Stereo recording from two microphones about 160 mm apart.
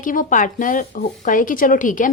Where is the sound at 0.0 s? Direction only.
55° left (ahead or behind).